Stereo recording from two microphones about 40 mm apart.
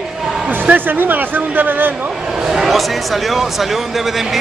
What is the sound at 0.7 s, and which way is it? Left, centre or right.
Speech, right.